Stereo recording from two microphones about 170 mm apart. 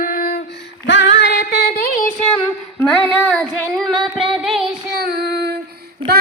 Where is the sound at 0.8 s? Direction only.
90° left; by 2.1 s 55° left (ahead or behind).